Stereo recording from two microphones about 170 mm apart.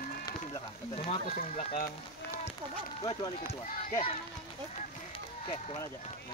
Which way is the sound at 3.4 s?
35° left (ahead or behind).